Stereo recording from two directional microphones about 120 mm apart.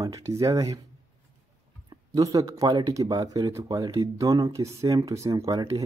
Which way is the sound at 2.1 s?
30° right (ahead or behind).